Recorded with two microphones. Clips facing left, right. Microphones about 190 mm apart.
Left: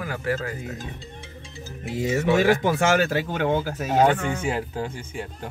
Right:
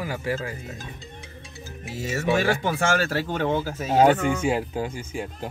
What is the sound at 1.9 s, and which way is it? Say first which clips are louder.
Speech: left 3 dB; 20° left (ahead or behind).